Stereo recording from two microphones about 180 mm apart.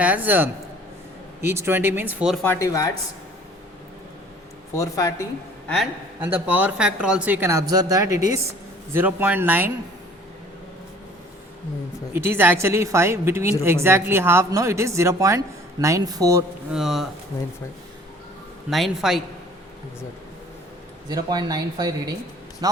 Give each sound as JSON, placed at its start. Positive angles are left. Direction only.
{"t": 0.0, "sound": "speech", "side_deg": -10}
{"t": 2.4, "sound": "speech", "side_deg": 10}
{"t": 4.7, "sound": "speech", "side_deg": 20}
{"t": 5.6, "sound": "a man's voice", "side_deg": 0}
{"t": 6.1, "sound": "speech", "side_deg": -10}
{"t": 12.1, "sound": "speech", "side_deg": -15}
{"t": 16.7, "sound": "a man's voice", "side_deg": 0}
{"t": 18.7, "sound": "a man's voice", "side_deg": 0}
{"t": 21.1, "sound": "speech", "side_deg": -20}